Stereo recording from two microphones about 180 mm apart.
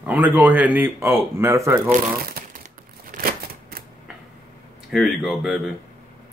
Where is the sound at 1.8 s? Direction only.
55° right (ahead or behind).